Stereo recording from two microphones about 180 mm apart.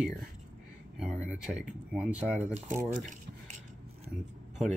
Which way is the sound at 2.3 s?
40° right (ahead or behind).